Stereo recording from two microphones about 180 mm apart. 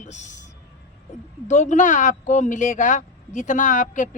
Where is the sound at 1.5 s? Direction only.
40° left (ahead or behind).